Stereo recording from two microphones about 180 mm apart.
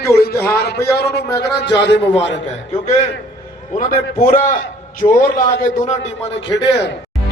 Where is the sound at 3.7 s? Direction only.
45° left (ahead or behind).